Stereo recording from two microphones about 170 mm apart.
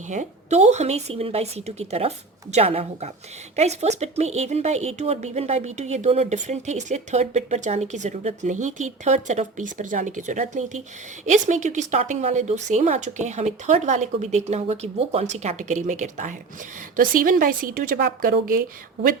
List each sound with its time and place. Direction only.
0.1 s a woman's voice: 45° right (ahead or behind)